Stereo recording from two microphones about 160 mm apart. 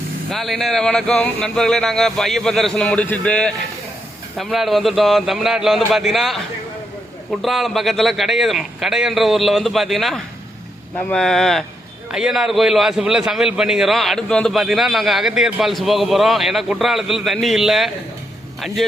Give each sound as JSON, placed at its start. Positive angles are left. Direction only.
{"t": 0.3, "sound": "a man's voice", "side_deg": 0}